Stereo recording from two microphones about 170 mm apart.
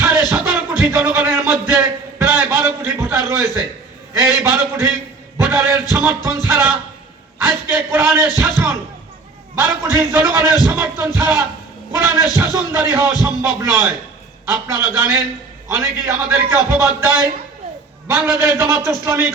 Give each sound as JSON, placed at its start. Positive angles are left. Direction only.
{"t": 0.3, "sound": "music", "side_deg": -10}
{"t": 0.8, "sound": "a man's voice", "side_deg": -15}
{"t": 1.7, "sound": "a sound", "side_deg": -15}
{"t": 3.2, "sound": "a man's voice", "side_deg": -15}
{"t": 5.4, "sound": "music", "side_deg": -15}
{"t": 5.9, "sound": "a man's voice", "side_deg": -15}